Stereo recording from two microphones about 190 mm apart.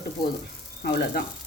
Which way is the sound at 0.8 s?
55° left (ahead or behind).